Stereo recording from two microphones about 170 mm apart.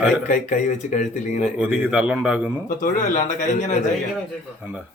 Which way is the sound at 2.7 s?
50° left (ahead or behind).